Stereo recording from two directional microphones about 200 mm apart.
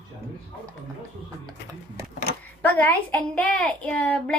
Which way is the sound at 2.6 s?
10° left (ahead or behind).